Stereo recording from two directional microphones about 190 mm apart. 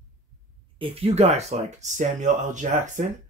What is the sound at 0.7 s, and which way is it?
Speech, 30° right (ahead or behind).